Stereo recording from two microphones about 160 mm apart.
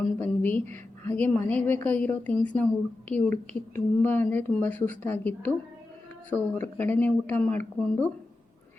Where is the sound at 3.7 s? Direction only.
10° left (ahead or behind).